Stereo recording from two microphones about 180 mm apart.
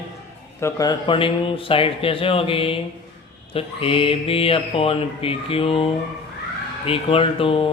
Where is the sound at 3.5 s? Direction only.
30° left (ahead or behind).